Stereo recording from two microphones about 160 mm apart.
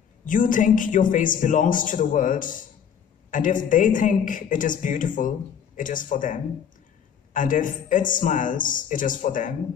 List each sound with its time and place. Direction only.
0.3 s a man's voice: 55° left (ahead or behind)